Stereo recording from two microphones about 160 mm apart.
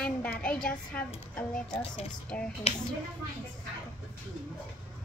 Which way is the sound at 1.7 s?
40° left (ahead or behind).